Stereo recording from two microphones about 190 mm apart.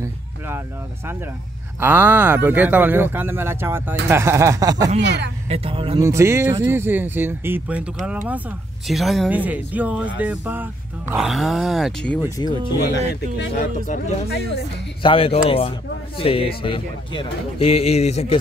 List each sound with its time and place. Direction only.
1.8 s speech: 10° right (ahead or behind)
5.0 s speech: 65° right (ahead or behind)
5.5 s speech: 30° right (ahead or behind)
5.9 s speech: 15° right (ahead or behind); by 12.2 s centre (ahead or behind)
12.2 s speech: 20° left (ahead or behind)
12.8 s speech: 65° left (ahead or behind)
13.8 s speech: 40° left (ahead or behind)
15.0 s speech: 30° left (ahead or behind)